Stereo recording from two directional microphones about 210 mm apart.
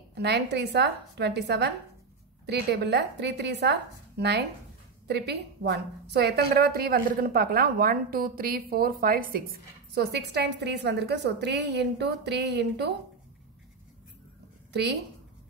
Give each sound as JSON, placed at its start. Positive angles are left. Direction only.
{"t": 0.1, "sound": "a woman's voice", "side_deg": -50}
{"t": 14.7, "sound": "a woman's voice", "side_deg": -55}